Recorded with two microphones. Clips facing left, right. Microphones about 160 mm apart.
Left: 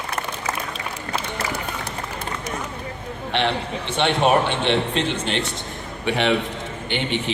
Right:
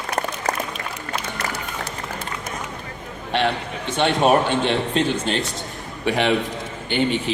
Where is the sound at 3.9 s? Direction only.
40° right (ahead or behind).